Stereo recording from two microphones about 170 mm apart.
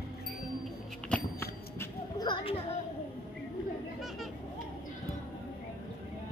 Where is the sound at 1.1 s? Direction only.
15° left (ahead or behind).